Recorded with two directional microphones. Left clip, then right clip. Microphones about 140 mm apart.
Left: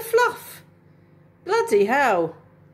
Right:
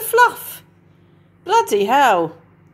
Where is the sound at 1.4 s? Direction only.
5° right (ahead or behind).